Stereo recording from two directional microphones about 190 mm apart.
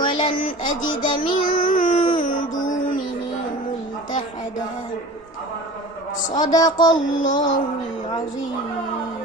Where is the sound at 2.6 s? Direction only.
40° left (ahead or behind).